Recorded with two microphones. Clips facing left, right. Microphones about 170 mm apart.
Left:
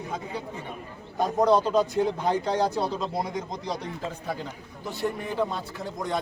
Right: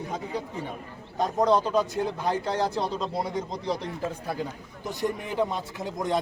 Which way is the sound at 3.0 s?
Centre (ahead or behind).